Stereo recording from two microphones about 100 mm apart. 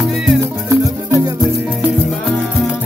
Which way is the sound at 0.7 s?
35° right (ahead or behind).